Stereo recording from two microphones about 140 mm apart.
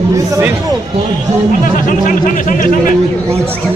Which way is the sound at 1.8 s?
70° left (ahead or behind).